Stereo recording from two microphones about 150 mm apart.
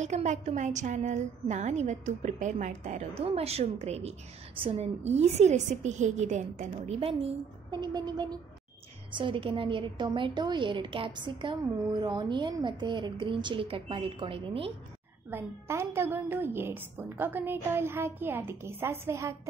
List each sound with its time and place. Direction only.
0.0 s a woman's voice: 50° right (ahead or behind)
15.2 s a woman's voice: 15° right (ahead or behind)